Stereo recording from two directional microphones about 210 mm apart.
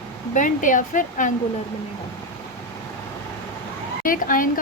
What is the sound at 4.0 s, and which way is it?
Speech, 40° left (ahead or behind).